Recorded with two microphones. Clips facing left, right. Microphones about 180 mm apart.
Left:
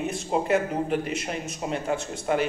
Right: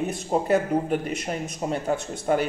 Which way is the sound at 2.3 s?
40° right (ahead or behind).